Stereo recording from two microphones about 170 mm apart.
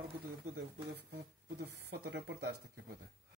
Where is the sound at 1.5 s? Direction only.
75° right (ahead or behind).